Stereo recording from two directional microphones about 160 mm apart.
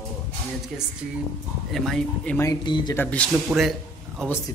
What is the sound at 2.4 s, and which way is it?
Speech, 25° left (ahead or behind).